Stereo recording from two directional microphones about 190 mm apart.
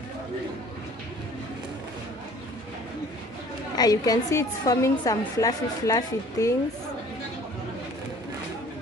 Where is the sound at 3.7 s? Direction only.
20° left (ahead or behind).